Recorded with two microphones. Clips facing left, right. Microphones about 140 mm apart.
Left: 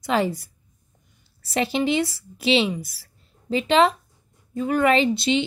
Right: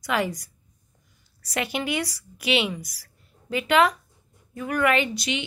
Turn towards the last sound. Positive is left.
turn(degrees=30)  # may be behind; listen again after turning